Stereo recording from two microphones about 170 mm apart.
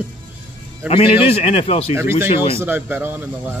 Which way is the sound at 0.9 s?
35° left (ahead or behind).